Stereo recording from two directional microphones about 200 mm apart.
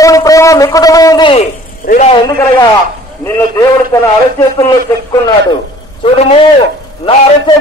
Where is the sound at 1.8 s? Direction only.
45° left (ahead or behind).